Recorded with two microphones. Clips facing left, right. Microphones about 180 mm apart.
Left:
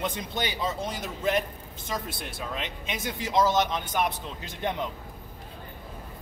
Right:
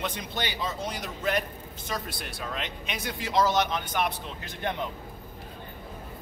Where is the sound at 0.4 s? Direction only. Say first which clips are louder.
Left 2 dB; 25° left (ahead or behind).